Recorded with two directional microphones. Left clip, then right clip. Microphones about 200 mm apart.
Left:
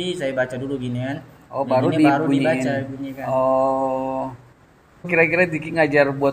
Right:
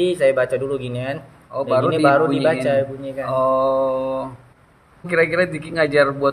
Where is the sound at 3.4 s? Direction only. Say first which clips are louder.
Right 1 dB; 15° right (ahead or behind).